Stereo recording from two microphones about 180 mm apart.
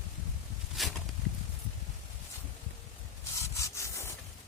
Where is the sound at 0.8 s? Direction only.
Centre (ahead or behind).